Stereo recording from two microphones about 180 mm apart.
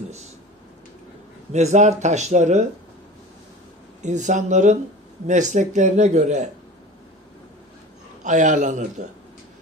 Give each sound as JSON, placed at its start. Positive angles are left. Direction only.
{"t": 1.5, "sound": "speech", "side_deg": -40}
{"t": 4.0, "sound": "speech", "side_deg": -40}
{"t": 8.2, "sound": "speech", "side_deg": -45}